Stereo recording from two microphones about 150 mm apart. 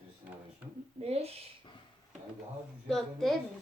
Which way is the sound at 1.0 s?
45° right (ahead or behind).